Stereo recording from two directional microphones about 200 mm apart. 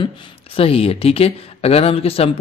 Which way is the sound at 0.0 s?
25° left (ahead or behind).